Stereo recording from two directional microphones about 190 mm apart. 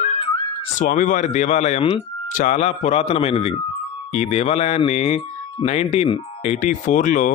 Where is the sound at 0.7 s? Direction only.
40° left (ahead or behind).